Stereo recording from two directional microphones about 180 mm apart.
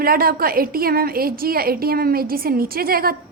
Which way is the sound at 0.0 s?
55° right (ahead or behind).